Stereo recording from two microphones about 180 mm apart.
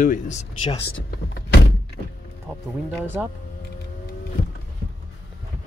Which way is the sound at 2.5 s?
10° left (ahead or behind).